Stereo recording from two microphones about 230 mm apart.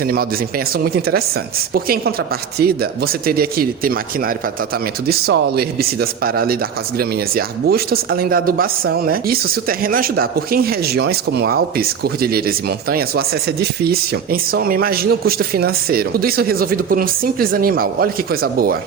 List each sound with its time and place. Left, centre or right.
0.0 s speech: right